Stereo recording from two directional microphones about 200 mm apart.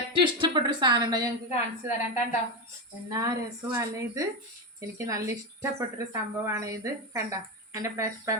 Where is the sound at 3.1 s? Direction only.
15° right (ahead or behind).